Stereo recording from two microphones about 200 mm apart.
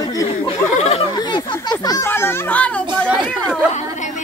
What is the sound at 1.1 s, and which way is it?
A child's voice, 20° left (ahead or behind).